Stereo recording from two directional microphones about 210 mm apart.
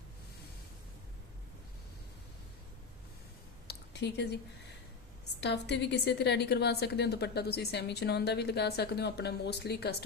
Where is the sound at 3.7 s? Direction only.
55° left (ahead or behind).